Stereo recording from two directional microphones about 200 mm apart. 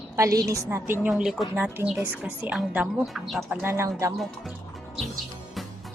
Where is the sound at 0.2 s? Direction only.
15° right (ahead or behind).